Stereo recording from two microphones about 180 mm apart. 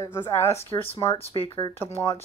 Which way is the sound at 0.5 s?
30° left (ahead or behind).